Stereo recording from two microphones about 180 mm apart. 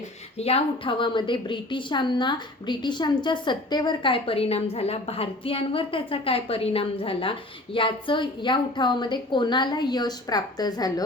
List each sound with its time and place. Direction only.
0.3 s a woman's voice: 35° left (ahead or behind)